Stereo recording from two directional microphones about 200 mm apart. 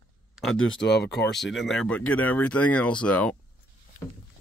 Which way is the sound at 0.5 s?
70° left (ahead or behind).